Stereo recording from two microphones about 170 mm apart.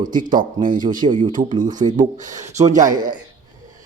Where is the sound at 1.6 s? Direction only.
50° right (ahead or behind).